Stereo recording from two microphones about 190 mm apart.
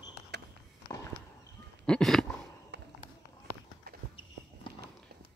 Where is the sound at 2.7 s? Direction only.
65° right (ahead or behind).